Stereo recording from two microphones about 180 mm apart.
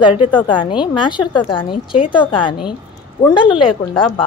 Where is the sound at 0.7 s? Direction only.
25° left (ahead or behind).